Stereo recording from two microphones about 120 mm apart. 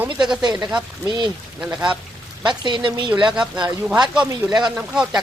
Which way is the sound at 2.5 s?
40° right (ahead or behind).